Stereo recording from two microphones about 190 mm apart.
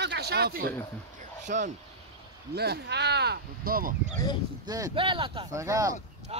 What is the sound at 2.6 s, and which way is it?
Speech, 60° right (ahead or behind).